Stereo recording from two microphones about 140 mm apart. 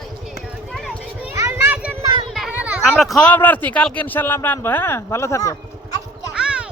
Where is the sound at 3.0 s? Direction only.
5° left (ahead or behind); by 5.6 s 20° left (ahead or behind).